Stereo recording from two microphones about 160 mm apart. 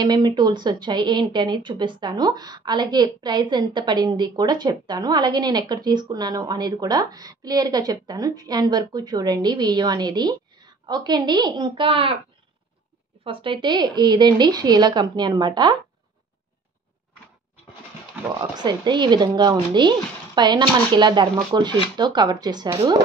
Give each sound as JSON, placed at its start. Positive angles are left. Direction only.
{"t": 0.0, "sound": "speech", "side_deg": -25}
{"t": 13.2, "sound": "speech", "side_deg": -35}
{"t": 18.4, "sound": "speech", "side_deg": -25}